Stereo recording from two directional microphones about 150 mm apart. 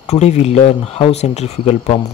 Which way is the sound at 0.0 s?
45° left (ahead or behind).